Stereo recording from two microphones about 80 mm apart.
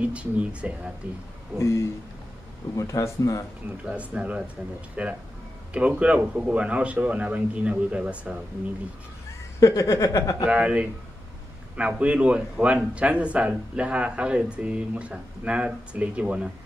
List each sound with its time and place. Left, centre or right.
0.0 s a man's voice: centre
1.6 s a sound: left
2.7 s speech: left
3.8 s a man's voice: centre
9.6 s speech: left
10.4 s a man's voice: centre